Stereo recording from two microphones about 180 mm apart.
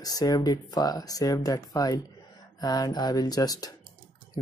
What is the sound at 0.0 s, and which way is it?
Speech, 20° left (ahead or behind).